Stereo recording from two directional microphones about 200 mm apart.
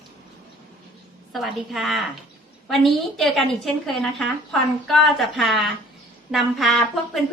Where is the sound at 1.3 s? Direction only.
Centre (ahead or behind).